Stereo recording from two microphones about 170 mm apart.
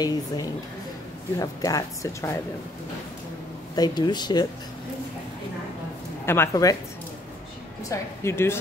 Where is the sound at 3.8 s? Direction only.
25° left (ahead or behind).